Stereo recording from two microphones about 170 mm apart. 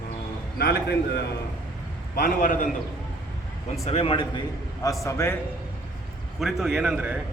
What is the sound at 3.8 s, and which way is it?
Speech, 35° left (ahead or behind).